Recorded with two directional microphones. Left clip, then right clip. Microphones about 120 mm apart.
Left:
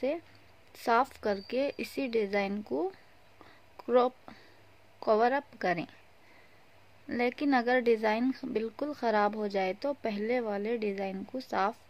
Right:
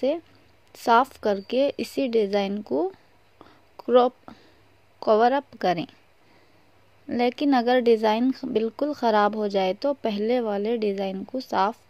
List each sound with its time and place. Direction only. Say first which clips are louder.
0.7 s a woman's voice: right 8 dB; 30° right (ahead or behind)
3.3 s a sound: right 6 dB; 25° right (ahead or behind)
5.0 s a woman's voice: right 7 dB; 30° right (ahead or behind)
7.1 s a woman's voice: right 7 dB; 35° right (ahead or behind)